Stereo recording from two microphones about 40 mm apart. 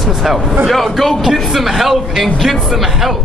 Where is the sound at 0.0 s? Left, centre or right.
Centre.